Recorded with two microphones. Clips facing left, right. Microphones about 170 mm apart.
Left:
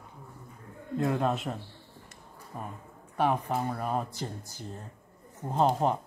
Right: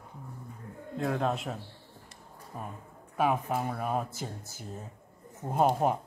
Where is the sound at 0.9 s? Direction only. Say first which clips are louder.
Left 2 dB; centre (ahead or behind).